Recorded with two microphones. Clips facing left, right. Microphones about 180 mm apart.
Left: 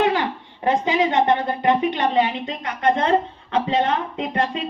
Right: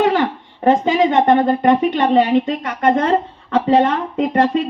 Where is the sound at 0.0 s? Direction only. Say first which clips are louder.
Right 4 dB; 50° right (ahead or behind).